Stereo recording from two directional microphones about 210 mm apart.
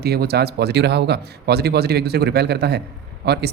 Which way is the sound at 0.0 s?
50° right (ahead or behind).